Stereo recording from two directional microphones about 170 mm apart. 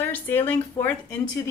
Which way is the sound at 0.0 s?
10° left (ahead or behind).